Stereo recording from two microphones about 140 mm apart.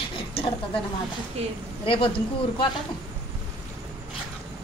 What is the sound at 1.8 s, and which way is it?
Speech, 40° left (ahead or behind).